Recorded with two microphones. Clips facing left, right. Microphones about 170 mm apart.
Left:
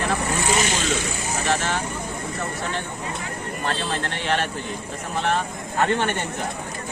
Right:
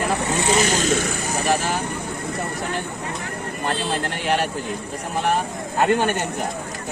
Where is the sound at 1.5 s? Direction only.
10° right (ahead or behind).